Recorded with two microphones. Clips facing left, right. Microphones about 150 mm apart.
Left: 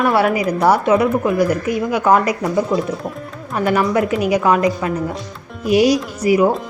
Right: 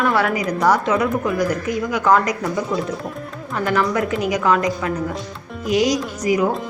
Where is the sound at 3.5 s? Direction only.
20° left (ahead or behind).